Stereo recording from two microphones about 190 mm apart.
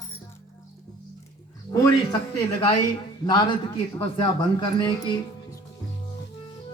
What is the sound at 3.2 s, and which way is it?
A man's voice, 20° left (ahead or behind).